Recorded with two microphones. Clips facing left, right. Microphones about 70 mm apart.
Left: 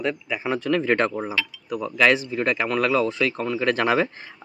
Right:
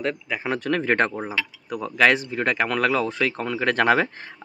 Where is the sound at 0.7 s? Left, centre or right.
Right.